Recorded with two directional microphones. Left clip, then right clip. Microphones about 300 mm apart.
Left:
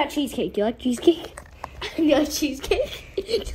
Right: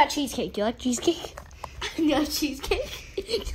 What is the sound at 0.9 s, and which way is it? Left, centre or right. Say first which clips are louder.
Speech: left 6 dB; right.